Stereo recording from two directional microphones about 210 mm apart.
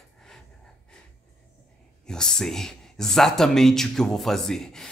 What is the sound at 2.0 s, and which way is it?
Speech, 5° left (ahead or behind).